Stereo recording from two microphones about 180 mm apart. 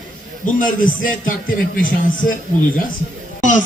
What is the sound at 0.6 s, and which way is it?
Speech, 50° left (ahead or behind).